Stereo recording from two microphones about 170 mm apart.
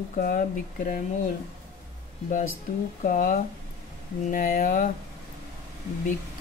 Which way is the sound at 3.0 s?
55° left (ahead or behind).